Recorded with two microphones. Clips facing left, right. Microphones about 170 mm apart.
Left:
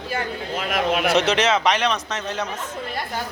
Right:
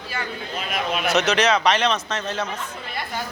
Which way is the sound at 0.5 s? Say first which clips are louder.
Left 4 dB; 90° left.